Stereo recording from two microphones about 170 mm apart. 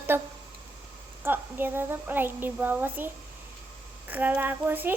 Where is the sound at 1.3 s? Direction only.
10° right (ahead or behind).